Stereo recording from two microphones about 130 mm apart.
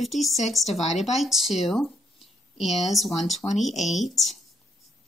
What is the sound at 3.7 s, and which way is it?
Speech, 65° left (ahead or behind).